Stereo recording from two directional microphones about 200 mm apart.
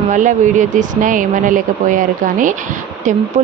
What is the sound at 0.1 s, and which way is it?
Speech, 40° right (ahead or behind).